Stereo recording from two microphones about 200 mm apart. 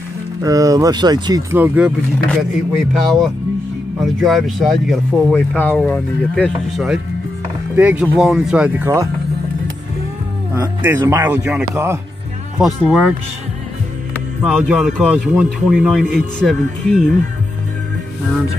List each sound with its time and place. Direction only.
0.4 s a man's voice: 15° right (ahead or behind)
2.9 s speech: centre (ahead or behind)
10.5 s a man's voice: 15° right (ahead or behind)
12.5 s speech: centre (ahead or behind)
14.4 s speech: 5° right (ahead or behind)